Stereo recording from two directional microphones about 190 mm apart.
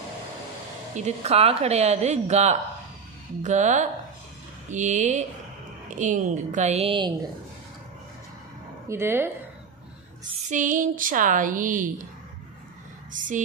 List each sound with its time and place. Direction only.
0.9 s a woman's voice: 35° right (ahead or behind)
8.9 s a woman's voice: 10° right (ahead or behind)
10.5 s a woman's voice: 45° right (ahead or behind)